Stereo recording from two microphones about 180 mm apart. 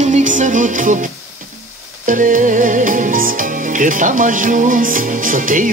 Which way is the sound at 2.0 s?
50° right (ahead or behind).